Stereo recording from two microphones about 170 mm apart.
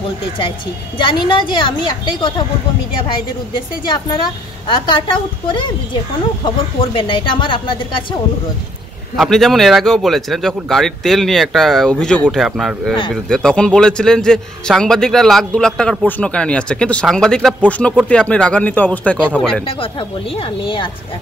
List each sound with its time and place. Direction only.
0.9 s speech: 25° left (ahead or behind)
3.8 s speech: 25° left (ahead or behind)
6.4 s speech: 30° left (ahead or behind)
9.1 s a man's voice: centre (ahead or behind)
19.6 s speech: 30° left (ahead or behind)